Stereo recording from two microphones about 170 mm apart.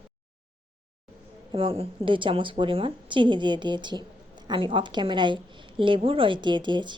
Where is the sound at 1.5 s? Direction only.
35° right (ahead or behind).